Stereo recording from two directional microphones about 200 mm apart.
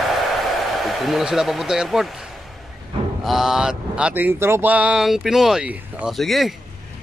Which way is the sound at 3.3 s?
Centre (ahead or behind).